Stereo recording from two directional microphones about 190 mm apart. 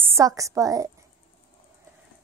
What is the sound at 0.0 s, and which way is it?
Speech, 15° right (ahead or behind).